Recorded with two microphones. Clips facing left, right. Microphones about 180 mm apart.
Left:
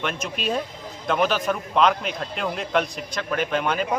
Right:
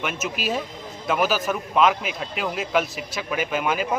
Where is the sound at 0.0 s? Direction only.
5° right (ahead or behind).